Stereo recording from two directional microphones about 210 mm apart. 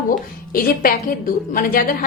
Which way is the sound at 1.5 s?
40° left (ahead or behind).